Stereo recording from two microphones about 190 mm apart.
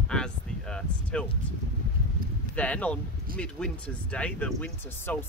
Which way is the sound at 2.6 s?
5° left (ahead or behind).